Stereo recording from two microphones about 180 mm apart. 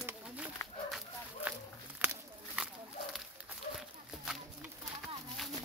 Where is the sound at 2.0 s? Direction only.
5° right (ahead or behind).